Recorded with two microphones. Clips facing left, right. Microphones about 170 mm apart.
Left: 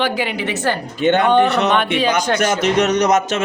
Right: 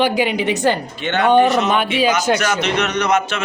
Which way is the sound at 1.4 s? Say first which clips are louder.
Right 1 dB; 65° left (ahead or behind).